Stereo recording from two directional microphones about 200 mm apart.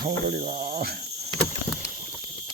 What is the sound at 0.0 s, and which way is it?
Speech, 50° right (ahead or behind).